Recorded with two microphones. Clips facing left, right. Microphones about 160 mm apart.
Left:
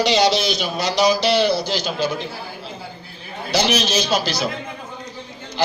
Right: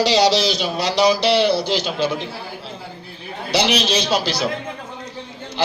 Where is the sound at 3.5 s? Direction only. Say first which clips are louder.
Right 1 dB; 30° right (ahead or behind).